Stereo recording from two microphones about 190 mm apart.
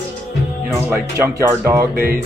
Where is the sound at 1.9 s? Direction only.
55° right (ahead or behind).